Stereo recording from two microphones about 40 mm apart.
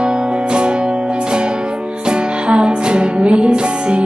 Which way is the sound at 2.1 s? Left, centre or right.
Right.